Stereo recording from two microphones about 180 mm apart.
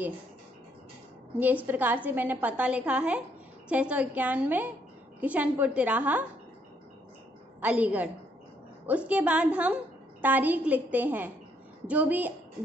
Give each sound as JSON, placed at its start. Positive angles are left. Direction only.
{"t": 1.7, "sound": "a woman's voice", "side_deg": -10}
{"t": 7.6, "sound": "a woman's voice", "side_deg": -10}